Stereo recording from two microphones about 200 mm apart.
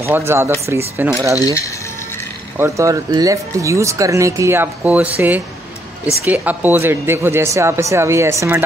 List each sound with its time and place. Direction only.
0.0 s speech: 10° right (ahead or behind)
1.4 s speech: 15° left (ahead or behind)
2.5 s speech: 15° right (ahead or behind)